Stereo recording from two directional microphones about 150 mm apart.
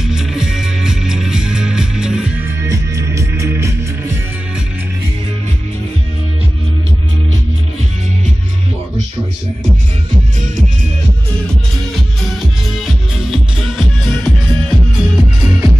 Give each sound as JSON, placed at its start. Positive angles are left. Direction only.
{"t": 0.0, "sound": "music", "side_deg": -5}
{"t": 2.6, "sound": "music", "side_deg": -20}
{"t": 11.4, "sound": "music", "side_deg": 0}